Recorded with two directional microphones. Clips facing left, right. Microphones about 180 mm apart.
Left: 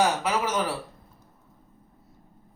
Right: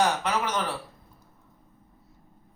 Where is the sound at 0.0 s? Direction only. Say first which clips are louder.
Left 1 dB; 5° left (ahead or behind).